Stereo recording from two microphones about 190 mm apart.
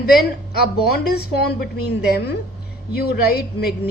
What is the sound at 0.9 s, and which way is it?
Speech, 55° left (ahead or behind).